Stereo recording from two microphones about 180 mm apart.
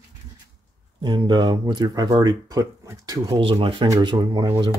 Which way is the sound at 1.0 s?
25° right (ahead or behind).